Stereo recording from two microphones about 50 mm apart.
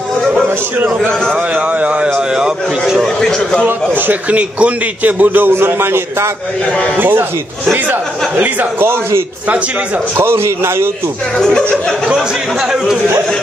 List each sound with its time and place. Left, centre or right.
1.5 s a man's voice: right
3.2 s a man's voice: centre
3.6 s a man's voice: right
4.4 s a man's voice: right
5.5 s a man's voice: right
7.0 s a man's voice: right
10.1 s a man's voice: right
11.3 s a man's voice: centre
12.1 s a man's voice: centre